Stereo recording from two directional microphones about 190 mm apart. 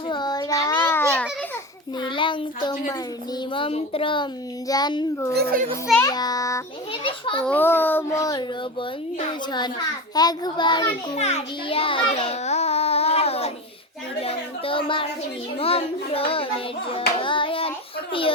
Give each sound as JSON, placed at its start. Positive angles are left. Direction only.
{"t": 0.1, "sound": "children playing", "side_deg": 20}
{"t": 2.0, "sound": "speech", "side_deg": 25}
{"t": 3.5, "sound": "child singing", "side_deg": 30}
{"t": 5.3, "sound": "a child's voice", "side_deg": -55}
{"t": 6.0, "sound": "child singing", "side_deg": 20}
{"t": 7.4, "sound": "a child's voice", "side_deg": 10}
{"t": 9.1, "sound": "child singing", "side_deg": 25}
{"t": 11.2, "sound": "child singing", "side_deg": 35}